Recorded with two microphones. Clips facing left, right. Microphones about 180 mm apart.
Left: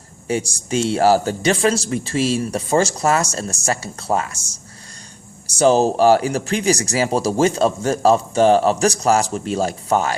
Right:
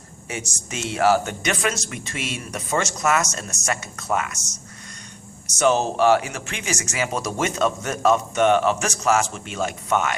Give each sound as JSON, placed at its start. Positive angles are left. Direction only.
{"t": 0.3, "sound": "speech", "side_deg": 35}
{"t": 5.5, "sound": "speech", "side_deg": 30}